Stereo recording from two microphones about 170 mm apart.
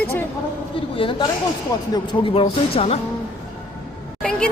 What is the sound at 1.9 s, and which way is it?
Speech, 35° left (ahead or behind).